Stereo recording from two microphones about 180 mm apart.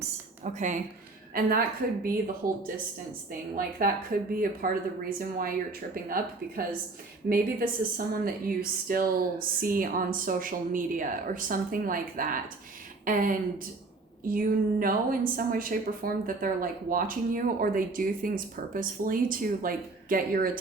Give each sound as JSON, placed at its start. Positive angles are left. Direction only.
{"t": 0.4, "sound": "a woman's voice", "side_deg": -45}
{"t": 1.3, "sound": "a woman's voice", "side_deg": -55}
{"t": 7.3, "sound": "a woman's voice", "side_deg": -55}